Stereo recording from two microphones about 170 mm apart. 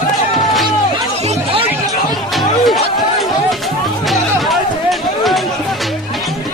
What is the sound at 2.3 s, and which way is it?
Music, centre (ahead or behind).